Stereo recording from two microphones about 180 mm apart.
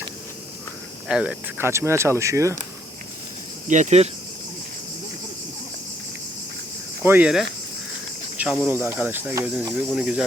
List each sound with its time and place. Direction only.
1.0 s speech: 5° right (ahead or behind)
3.7 s speech: 40° right (ahead or behind)
7.0 s speech: 10° right (ahead or behind)